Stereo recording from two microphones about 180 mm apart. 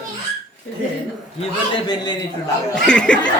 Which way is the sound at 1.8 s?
25° left (ahead or behind).